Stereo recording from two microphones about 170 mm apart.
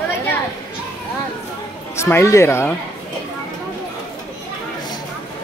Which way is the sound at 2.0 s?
15° left (ahead or behind).